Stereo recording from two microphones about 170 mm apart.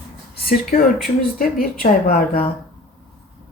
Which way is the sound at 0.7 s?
60° left (ahead or behind).